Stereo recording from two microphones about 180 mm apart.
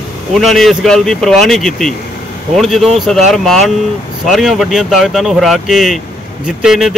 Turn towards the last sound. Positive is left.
turn(degrees=0)  # may be behind; listen again after turning